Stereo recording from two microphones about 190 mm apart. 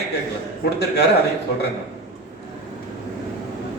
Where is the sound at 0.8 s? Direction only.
60° left (ahead or behind).